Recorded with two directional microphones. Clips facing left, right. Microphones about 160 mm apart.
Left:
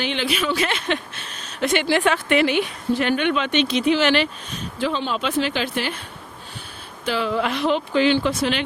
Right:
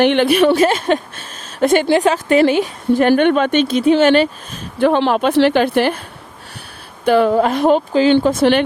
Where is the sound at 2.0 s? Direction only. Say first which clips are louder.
Right 6 dB; 35° right (ahead or behind).